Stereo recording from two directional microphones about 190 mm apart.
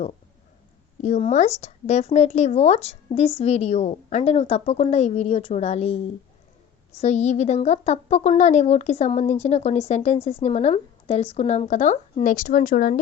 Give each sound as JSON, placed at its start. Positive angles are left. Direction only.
{"t": 1.0, "sound": "speech", "side_deg": 40}